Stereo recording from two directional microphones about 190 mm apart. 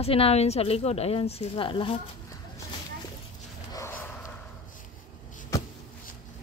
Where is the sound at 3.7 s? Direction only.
15° left (ahead or behind).